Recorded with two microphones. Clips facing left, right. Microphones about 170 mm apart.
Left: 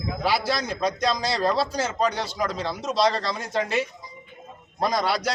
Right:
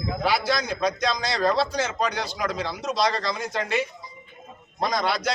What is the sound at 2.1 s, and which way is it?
Speech, centre (ahead or behind).